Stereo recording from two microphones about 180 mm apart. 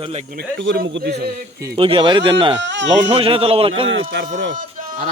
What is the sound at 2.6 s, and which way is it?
Speech, 85° right.